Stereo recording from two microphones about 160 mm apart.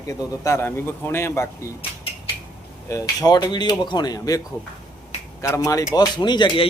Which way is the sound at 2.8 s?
20° left (ahead or behind).